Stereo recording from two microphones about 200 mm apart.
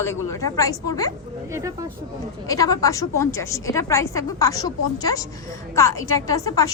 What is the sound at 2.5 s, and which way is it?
A woman's voice, 15° left (ahead or behind).